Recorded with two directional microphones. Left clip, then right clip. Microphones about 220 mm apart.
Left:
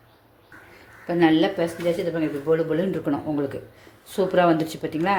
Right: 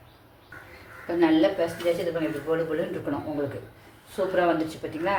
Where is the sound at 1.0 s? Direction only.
35° left (ahead or behind).